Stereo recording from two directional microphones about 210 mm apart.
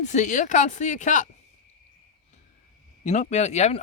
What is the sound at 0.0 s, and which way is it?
Speech, 35° left (ahead or behind).